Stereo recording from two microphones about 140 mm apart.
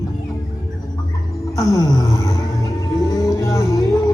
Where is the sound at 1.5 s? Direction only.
25° left (ahead or behind).